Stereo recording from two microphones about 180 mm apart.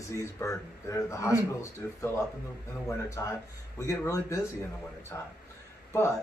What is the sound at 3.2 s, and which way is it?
Speech, 20° left (ahead or behind).